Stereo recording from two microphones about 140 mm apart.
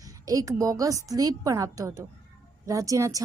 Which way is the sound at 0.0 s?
25° right (ahead or behind).